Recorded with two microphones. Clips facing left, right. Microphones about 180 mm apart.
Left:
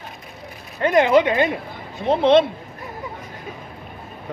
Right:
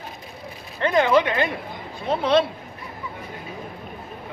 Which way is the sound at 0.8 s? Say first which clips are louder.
Left 3 dB; 20° left (ahead or behind).